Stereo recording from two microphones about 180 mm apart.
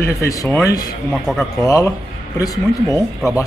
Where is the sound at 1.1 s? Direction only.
Centre (ahead or behind).